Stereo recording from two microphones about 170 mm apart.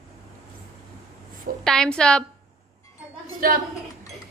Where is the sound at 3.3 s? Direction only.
55° right (ahead or behind).